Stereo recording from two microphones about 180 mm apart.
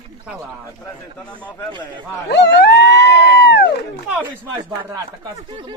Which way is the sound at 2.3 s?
70° left (ahead or behind).